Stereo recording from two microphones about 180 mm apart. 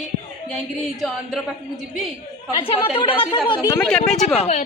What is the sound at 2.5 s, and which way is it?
Speech, 30° left (ahead or behind).